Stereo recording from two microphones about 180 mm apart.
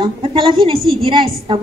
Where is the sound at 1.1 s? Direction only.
30° right (ahead or behind).